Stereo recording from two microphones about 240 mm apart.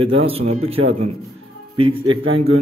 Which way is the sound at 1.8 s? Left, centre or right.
Right.